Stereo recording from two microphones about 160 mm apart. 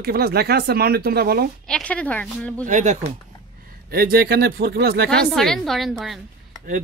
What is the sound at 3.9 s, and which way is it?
Speech, 70° right (ahead or behind).